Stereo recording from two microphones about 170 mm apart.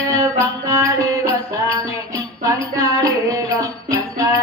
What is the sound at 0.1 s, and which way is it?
Music, 20° right (ahead or behind).